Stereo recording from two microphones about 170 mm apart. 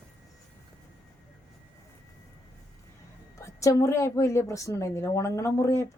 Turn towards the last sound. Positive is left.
turn(degrees=15)  # may be behind; listen again after turning